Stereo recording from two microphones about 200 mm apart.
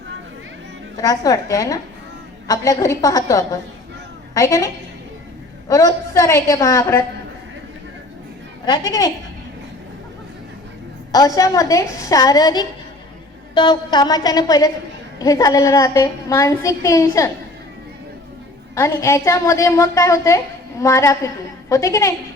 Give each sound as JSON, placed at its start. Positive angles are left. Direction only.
{"t": 0.9, "sound": "a woman's voice", "side_deg": 20}
{"t": 8.6, "sound": "a woman's voice", "side_deg": 20}
{"t": 11.1, "sound": "a woman's voice", "side_deg": 20}
{"t": 18.7, "sound": "a woman's voice", "side_deg": 15}